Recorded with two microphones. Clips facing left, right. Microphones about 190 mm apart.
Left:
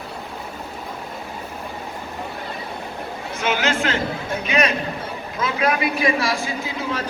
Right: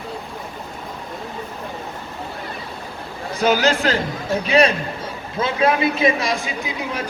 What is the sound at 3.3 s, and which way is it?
A man's voice, 35° right (ahead or behind).